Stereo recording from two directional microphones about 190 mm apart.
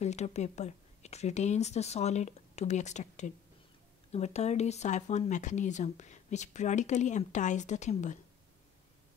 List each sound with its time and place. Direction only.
0.0 s speech: 35° left (ahead or behind)